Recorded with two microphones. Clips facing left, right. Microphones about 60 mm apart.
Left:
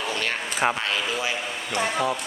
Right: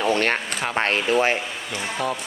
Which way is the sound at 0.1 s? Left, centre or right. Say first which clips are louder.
Right 7 dB; right.